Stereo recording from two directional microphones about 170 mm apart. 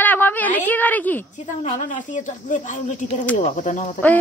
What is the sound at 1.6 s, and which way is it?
Speech, 45° left (ahead or behind).